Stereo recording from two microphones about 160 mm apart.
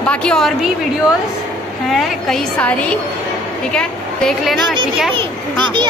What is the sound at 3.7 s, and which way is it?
A woman's voice, 5° left (ahead or behind).